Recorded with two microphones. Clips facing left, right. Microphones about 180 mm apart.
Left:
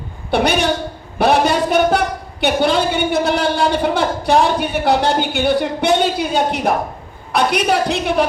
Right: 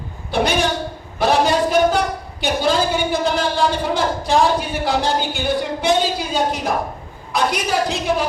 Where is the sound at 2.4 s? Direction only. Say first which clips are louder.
Left 3 dB; 65° left (ahead or behind).